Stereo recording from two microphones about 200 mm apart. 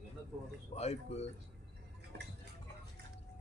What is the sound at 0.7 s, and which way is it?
Speech, 30° left (ahead or behind).